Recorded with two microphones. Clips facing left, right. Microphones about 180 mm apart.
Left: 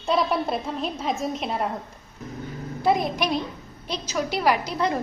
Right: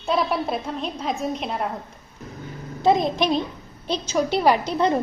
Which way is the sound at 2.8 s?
25° right (ahead or behind).